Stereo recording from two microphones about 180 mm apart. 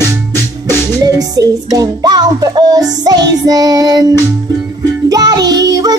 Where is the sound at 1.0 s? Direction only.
20° right (ahead or behind).